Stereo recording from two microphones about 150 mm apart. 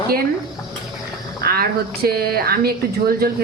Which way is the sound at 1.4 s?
90° right.